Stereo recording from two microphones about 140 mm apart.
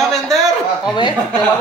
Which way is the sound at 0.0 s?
Centre (ahead or behind).